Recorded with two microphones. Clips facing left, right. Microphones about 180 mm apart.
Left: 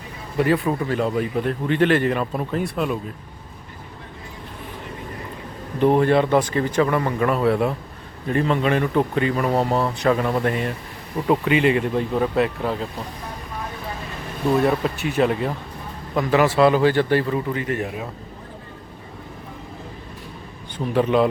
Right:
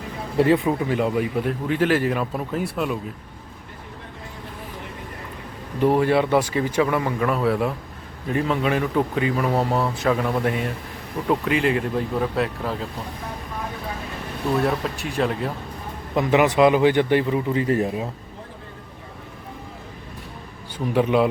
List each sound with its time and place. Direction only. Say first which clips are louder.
0.3 s speech: right 2 dB; 25° right (ahead or behind)
0.7 s speech: even; 15° right (ahead or behind)
6.0 s speech: left 1 dB; 5° right (ahead or behind)
14.4 s speech: left 3 dB; centre (ahead or behind)
16.1 s speech: even; 20° right (ahead or behind)
17.6 s speech: right 4 dB; 35° right (ahead or behind)
20.7 s speech: left 1 dB; 10° right (ahead or behind)